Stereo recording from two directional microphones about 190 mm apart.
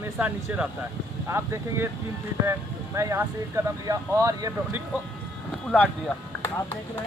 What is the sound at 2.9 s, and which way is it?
Speech, 15° right (ahead or behind).